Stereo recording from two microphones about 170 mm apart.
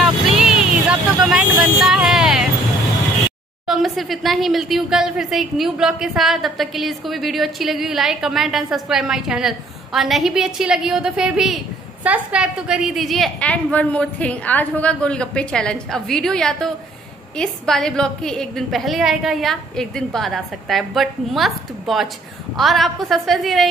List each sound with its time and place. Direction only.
0.0 s vehicle: 5° right (ahead or behind)
3.6 s a woman's voice: centre (ahead or behind)